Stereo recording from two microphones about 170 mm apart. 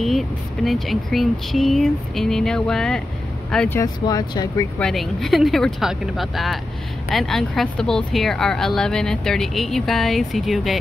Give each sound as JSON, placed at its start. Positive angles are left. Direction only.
{"t": 0.7, "sound": "speech", "side_deg": 0}
{"t": 4.0, "sound": "speech", "side_deg": 25}
{"t": 4.7, "sound": "speech", "side_deg": 5}